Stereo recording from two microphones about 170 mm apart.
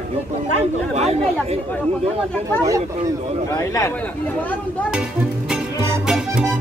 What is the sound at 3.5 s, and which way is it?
Speech, 20° left (ahead or behind).